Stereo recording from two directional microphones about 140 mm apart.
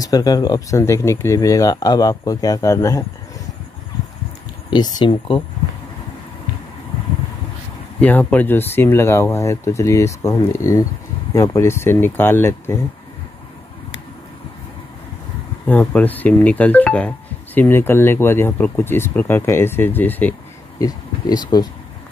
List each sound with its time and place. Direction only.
0.0 s speech: 25° left (ahead or behind)
4.6 s speech: 30° left (ahead or behind)
8.0 s speech: 10° left (ahead or behind)
15.6 s speech: 10° left (ahead or behind)
20.8 s speech: 30° left (ahead or behind)